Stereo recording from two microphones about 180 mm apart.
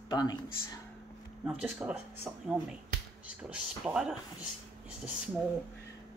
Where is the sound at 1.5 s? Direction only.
10° right (ahead or behind).